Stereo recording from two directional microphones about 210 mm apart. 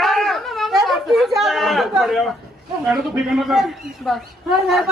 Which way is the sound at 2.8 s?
Centre (ahead or behind).